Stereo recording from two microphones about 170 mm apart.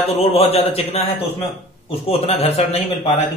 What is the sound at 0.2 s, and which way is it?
Speech, 35° left (ahead or behind).